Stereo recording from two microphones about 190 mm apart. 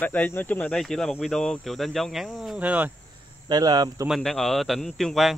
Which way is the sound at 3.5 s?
20° right (ahead or behind).